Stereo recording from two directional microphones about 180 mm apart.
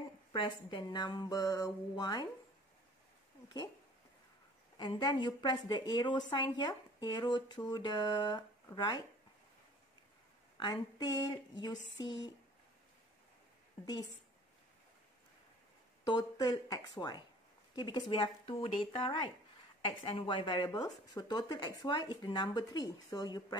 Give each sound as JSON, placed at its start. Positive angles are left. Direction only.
{"t": 0.3, "sound": "a woman's voice", "side_deg": 25}
{"t": 4.7, "sound": "a woman's voice", "side_deg": 25}
{"t": 10.6, "sound": "a woman's voice", "side_deg": 25}
{"t": 16.1, "sound": "a woman's voice", "side_deg": 25}